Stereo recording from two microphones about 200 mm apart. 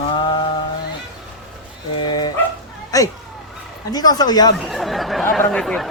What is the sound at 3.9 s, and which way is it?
Speech, 20° left (ahead or behind).